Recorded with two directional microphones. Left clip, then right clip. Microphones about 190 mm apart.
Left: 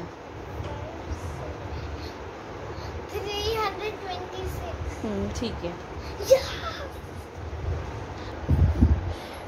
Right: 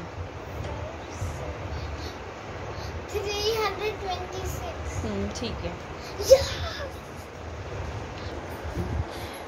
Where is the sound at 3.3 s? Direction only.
5° right (ahead or behind).